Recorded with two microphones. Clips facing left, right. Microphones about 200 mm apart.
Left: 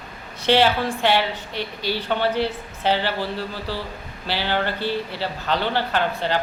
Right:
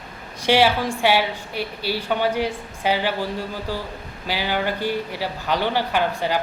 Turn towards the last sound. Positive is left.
turn(degrees=-10)  # may be behind; listen again after turning